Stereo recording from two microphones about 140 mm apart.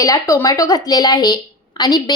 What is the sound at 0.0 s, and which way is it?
A woman's voice, 25° left (ahead or behind).